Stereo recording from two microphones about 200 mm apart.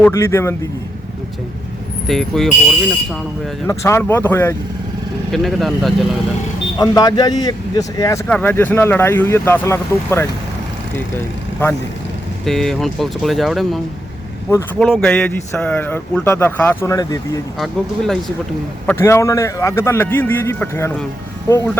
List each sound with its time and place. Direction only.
0.0 s speech: 15° left (ahead or behind)
2.0 s speech: centre (ahead or behind)
3.7 s speech: 15° left (ahead or behind)
5.3 s speech: centre (ahead or behind)
6.7 s speech: 20° left (ahead or behind)
12.5 s speech: centre (ahead or behind)
14.8 s speech: centre (ahead or behind); by 17.4 s 15° left (ahead or behind)
17.6 s speech: centre (ahead or behind)